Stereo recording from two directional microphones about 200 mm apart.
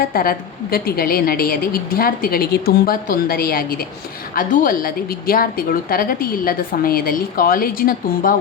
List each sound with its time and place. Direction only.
0.0 s a woman's voice: 45° left (ahead or behind)